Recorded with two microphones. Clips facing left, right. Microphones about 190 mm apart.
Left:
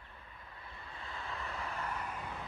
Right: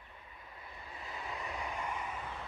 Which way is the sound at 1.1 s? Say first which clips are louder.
Right 1 dB; 15° right (ahead or behind).